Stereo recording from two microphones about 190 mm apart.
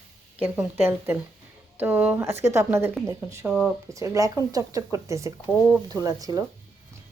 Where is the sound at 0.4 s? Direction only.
10° right (ahead or behind).